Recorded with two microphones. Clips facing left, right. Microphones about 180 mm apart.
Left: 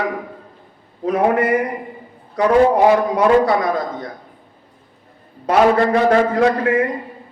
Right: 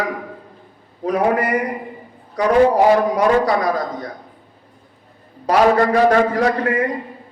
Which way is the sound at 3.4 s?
25° left (ahead or behind).